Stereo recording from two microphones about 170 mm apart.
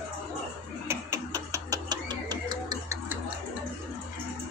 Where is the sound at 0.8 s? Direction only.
15° right (ahead or behind).